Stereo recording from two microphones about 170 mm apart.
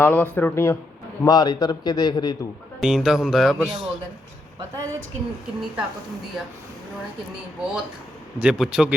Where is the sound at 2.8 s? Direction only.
Centre (ahead or behind).